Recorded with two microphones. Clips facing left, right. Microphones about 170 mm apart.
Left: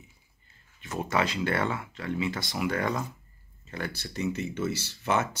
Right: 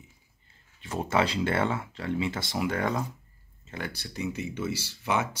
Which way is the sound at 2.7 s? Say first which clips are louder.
Even; 5° right (ahead or behind).